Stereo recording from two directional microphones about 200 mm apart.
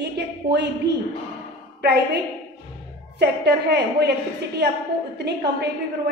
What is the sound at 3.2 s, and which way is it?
Speech, 55° right (ahead or behind).